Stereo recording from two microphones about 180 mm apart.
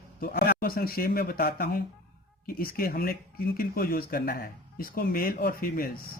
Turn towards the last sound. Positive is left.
turn(degrees=55)  # may be behind; listen again after turning